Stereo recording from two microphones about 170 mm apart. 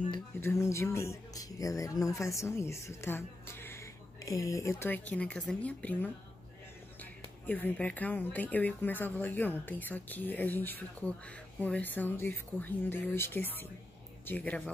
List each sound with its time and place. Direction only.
0.4 s speech: 15° left (ahead or behind)